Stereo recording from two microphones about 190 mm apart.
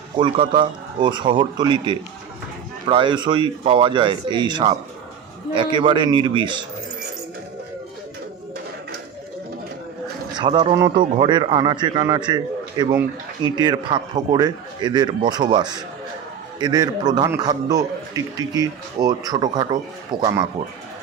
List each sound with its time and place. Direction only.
0.2 s a man's voice: 25° right (ahead or behind)
10.3 s a man's voice: 25° right (ahead or behind)